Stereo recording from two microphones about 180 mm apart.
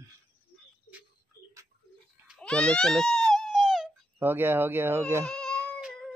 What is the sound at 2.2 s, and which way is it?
Baby cry, 5° left (ahead or behind).